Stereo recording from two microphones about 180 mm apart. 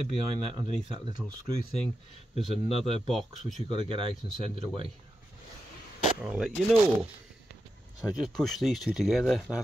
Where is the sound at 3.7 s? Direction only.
30° right (ahead or behind).